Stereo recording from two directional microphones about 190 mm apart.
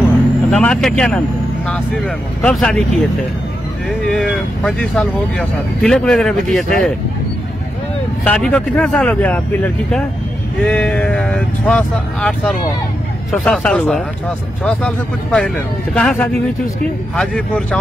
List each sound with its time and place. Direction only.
0.5 s speech: 5° left (ahead or behind)
4.1 s speech: centre (ahead or behind)
8.3 s speech: 5° left (ahead or behind)